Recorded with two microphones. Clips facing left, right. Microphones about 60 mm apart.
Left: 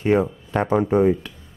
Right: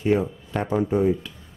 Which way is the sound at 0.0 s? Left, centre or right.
Left.